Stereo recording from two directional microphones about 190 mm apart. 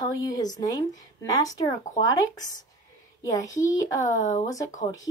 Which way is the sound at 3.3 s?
15° left (ahead or behind).